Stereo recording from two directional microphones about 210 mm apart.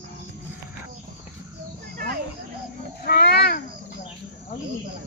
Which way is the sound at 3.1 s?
50° left (ahead or behind).